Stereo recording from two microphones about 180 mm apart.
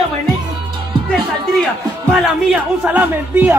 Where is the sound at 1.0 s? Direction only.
Centre (ahead or behind).